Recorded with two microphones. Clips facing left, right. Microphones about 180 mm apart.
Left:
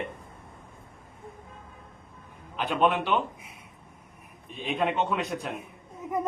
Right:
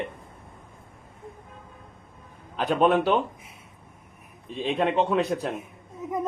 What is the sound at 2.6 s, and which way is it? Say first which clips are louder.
Speech: right 4 dB; 40° right (ahead or behind).